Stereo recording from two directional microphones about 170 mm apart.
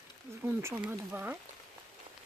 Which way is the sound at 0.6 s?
15° right (ahead or behind).